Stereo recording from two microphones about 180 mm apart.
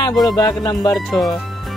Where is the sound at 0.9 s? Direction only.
Centre (ahead or behind).